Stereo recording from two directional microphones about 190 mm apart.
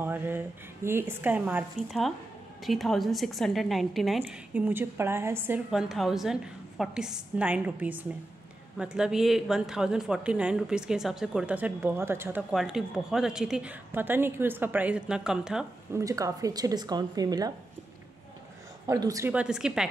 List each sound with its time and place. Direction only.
0.0 s a sound: 10° right (ahead or behind)
0.8 s a woman's voice: 10° right (ahead or behind)
15.9 s speech: 15° right (ahead or behind)
18.9 s a woman's voice: 15° right (ahead or behind)